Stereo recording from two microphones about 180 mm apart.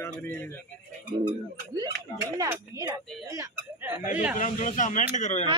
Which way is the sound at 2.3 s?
20° right (ahead or behind).